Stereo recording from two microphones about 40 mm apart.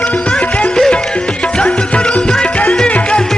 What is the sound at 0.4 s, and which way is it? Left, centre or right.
Music, left.